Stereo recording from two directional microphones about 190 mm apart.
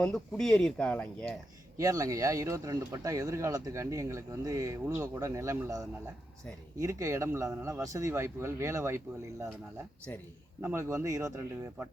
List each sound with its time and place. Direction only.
0.0 s speech: 5° left (ahead or behind)
1.8 s speech: 15° right (ahead or behind)
10.6 s speech: 15° right (ahead or behind)